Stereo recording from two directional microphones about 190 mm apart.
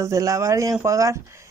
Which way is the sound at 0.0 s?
15° right (ahead or behind).